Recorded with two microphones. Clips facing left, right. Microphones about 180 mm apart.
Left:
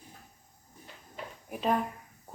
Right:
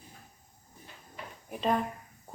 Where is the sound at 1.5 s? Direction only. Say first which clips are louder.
Even; 5° left (ahead or behind).